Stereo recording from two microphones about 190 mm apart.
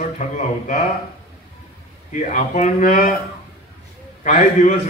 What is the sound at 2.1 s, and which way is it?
A man's voice, 40° left (ahead or behind).